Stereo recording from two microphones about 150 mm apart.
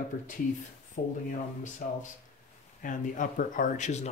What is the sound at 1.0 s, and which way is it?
Speech, 65° left (ahead or behind).